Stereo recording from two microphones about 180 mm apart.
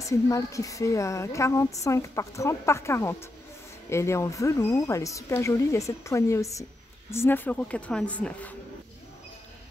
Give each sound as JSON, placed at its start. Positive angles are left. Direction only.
{"t": 0.0, "sound": "a woman's voice", "side_deg": 15}